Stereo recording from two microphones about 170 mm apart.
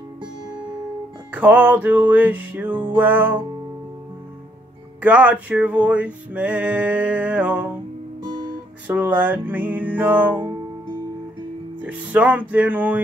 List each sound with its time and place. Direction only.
1.3 s male singing: 10° right (ahead or behind)
5.0 s male singing: 10° right (ahead or behind)
8.2 s guitar: 25° right (ahead or behind)
8.8 s male singing: 10° right (ahead or behind)
11.8 s male singing: 10° right (ahead or behind)